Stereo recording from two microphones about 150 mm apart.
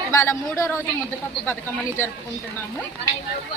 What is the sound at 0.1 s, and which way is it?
Speech, 15° left (ahead or behind).